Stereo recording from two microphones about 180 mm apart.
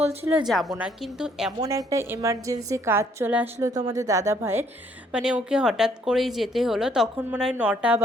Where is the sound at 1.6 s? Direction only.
15° right (ahead or behind).